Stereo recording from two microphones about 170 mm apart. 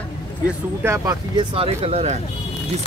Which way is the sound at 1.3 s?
30° right (ahead or behind).